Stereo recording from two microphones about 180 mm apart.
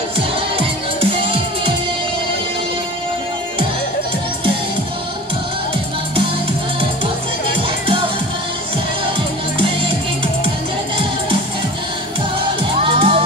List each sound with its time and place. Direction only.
12.8 s music: 30° right (ahead or behind)